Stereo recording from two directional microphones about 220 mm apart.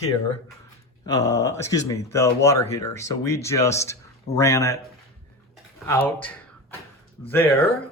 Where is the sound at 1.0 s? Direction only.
15° left (ahead or behind).